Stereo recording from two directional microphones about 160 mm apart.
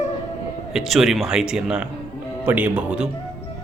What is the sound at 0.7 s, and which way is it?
Speech, centre (ahead or behind).